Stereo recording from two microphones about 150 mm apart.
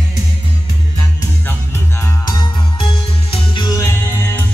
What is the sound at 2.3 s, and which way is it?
Music, 30° left (ahead or behind).